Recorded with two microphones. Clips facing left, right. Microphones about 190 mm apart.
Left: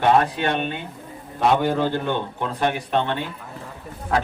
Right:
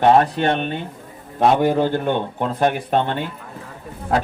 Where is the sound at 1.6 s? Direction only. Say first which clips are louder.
Right 4 dB; 45° right (ahead or behind).